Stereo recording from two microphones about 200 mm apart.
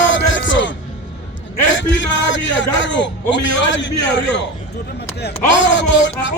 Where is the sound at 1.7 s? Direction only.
65° left (ahead or behind).